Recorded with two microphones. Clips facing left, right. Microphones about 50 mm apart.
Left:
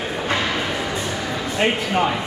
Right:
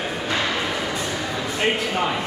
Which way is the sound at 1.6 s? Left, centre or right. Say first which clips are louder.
Left 2 dB; left.